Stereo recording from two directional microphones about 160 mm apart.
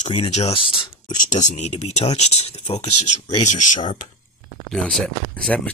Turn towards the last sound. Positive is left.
turn(degrees=5)  # may be behind; listen again after turning